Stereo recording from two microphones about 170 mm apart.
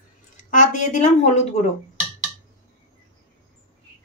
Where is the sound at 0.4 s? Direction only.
45° left (ahead or behind).